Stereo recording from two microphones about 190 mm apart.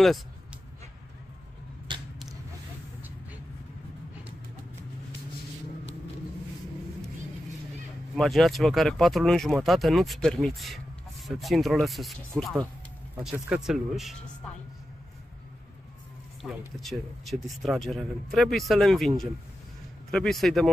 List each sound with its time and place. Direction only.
1.9 s a sound: 25° right (ahead or behind)
8.2 s speech: centre (ahead or behind)
16.4 s speech: centre (ahead or behind)